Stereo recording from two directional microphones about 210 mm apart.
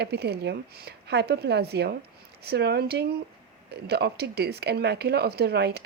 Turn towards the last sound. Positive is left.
turn(degrees=-50)  # may be behind; listen again after turning